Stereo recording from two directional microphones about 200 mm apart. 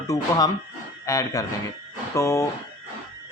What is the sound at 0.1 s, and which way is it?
Speech, 20° left (ahead or behind).